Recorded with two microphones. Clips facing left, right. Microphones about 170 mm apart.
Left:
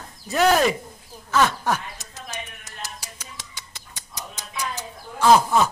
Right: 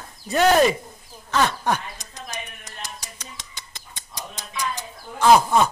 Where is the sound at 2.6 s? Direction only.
10° left (ahead or behind).